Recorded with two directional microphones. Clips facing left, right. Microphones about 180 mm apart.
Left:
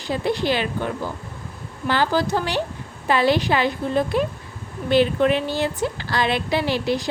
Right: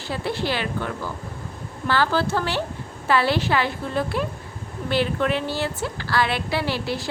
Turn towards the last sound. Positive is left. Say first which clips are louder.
# left 4 dB
turn(degrees=20)  # may be behind; listen again after turning